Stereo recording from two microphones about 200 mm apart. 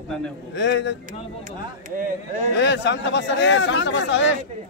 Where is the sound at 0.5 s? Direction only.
60° left (ahead or behind).